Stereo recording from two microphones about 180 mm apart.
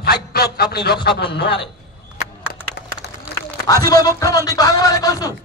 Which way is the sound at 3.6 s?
20° left (ahead or behind).